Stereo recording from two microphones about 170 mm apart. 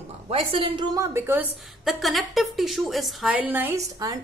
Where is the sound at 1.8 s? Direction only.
Centre (ahead or behind).